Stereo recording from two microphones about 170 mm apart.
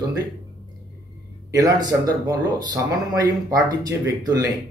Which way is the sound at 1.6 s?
20° right (ahead or behind).